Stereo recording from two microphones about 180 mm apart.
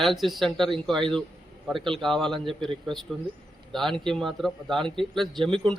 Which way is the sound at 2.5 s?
30° right (ahead or behind).